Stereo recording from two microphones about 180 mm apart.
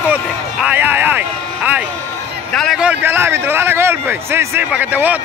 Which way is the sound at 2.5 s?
Centre (ahead or behind).